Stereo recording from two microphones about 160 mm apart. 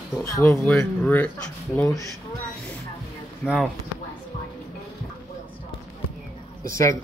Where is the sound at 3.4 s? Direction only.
10° left (ahead or behind).